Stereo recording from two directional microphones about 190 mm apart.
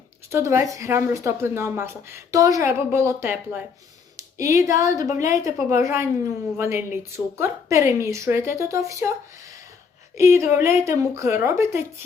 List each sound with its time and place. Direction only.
0.3 s speech: 15° right (ahead or behind)